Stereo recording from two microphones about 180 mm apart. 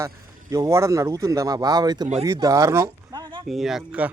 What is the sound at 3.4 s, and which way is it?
Speech, centre (ahead or behind).